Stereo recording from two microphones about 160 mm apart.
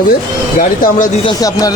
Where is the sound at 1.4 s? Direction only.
25° left (ahead or behind).